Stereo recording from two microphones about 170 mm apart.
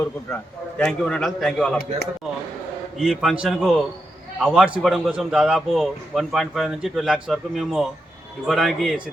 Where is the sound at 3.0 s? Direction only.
Centre (ahead or behind).